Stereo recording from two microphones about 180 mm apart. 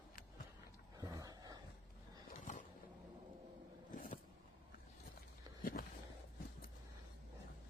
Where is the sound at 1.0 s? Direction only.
20° right (ahead or behind).